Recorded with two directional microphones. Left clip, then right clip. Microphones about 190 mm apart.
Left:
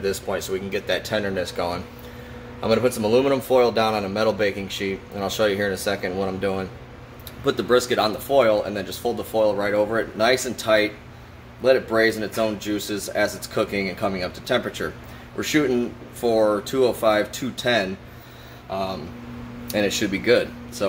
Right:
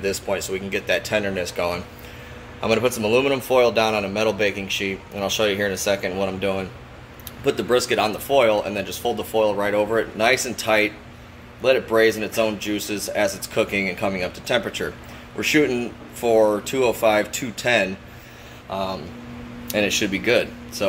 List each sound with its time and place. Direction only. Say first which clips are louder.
0.0 s speech: right 1 dB; 15° left (ahead or behind)